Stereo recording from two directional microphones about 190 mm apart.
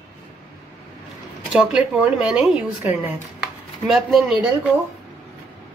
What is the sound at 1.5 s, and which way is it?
A woman's voice, 5° right (ahead or behind).